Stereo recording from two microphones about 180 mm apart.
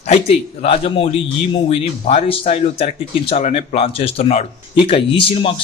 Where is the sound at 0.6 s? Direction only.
30° left (ahead or behind).